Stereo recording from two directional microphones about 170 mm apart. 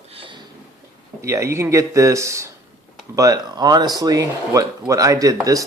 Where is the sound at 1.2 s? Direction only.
15° right (ahead or behind).